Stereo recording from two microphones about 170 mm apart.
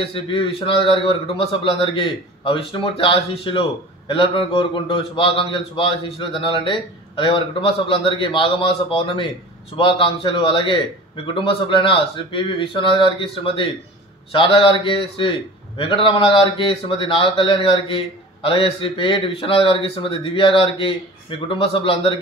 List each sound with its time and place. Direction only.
0.0 s a man's voice: 30° left (ahead or behind)